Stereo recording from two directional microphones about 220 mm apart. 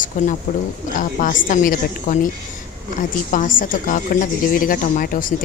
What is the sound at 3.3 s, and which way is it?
A woman's voice, 40° left (ahead or behind).